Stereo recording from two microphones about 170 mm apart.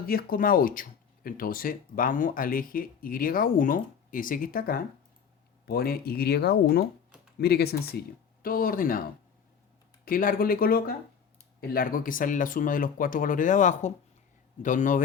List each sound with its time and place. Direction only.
0.0 s speech: 60° left (ahead or behind)
8.4 s speech: 60° left (ahead or behind)
10.1 s speech: 55° left (ahead or behind)